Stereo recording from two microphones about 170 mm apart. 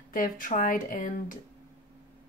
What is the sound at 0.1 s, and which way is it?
A woman's voice, 50° left (ahead or behind).